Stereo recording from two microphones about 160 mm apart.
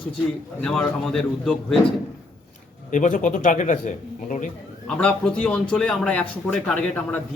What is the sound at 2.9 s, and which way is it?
A man's voice, 55° left (ahead or behind).